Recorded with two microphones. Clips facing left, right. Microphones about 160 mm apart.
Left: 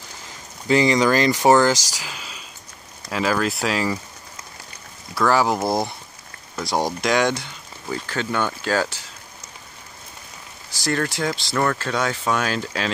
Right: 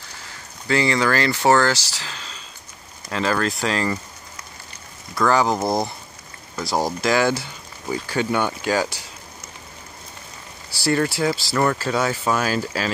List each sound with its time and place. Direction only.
0.7 s speech: 15° left (ahead or behind)
5.1 s speech: centre (ahead or behind)
10.7 s speech: 10° right (ahead or behind)